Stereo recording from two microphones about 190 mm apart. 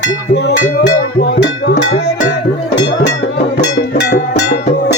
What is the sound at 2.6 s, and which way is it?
Music, 65° left (ahead or behind).